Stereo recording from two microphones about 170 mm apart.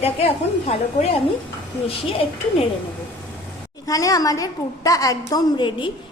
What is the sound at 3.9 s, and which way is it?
A woman's voice, 20° left (ahead or behind).